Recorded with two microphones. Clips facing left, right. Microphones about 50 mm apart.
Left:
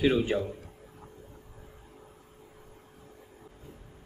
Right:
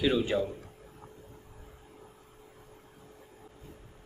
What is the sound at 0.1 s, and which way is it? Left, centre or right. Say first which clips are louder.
Speech: left 1 dB; centre.